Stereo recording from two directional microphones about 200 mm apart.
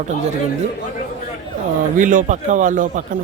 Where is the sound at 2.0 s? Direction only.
40° right (ahead or behind).